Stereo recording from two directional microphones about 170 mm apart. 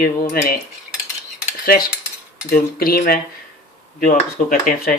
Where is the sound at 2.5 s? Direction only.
55° left (ahead or behind).